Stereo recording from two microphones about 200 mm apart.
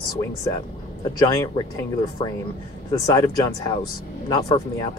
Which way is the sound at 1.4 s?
15° left (ahead or behind).